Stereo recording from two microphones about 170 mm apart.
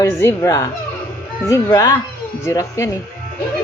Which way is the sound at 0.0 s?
15° left (ahead or behind).